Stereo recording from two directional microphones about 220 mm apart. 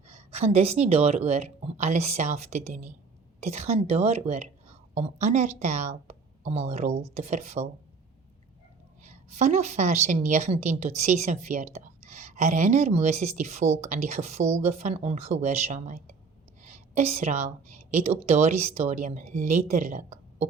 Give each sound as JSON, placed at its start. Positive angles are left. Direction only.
{"t": 0.1, "sound": "a woman's voice", "side_deg": -30}
{"t": 9.0, "sound": "a woman's voice", "side_deg": -30}